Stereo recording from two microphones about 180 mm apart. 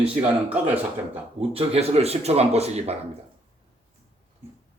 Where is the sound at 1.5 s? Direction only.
35° right (ahead or behind).